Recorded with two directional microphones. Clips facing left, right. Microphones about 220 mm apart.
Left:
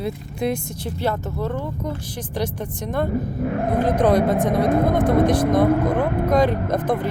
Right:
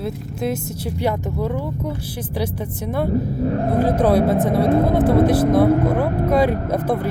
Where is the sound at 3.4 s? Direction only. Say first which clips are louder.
Right 1 dB; 30° right (ahead or behind).